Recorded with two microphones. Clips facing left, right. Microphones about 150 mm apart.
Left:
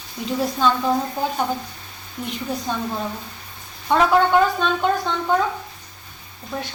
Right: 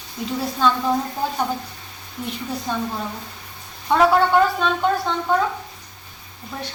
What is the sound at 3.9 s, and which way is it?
Speech, centre (ahead or behind).